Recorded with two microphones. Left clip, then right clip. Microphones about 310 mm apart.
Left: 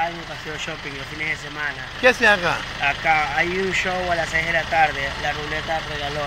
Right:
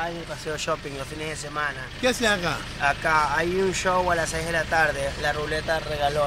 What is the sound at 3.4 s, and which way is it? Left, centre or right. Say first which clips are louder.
Speech: left 3 dB; right.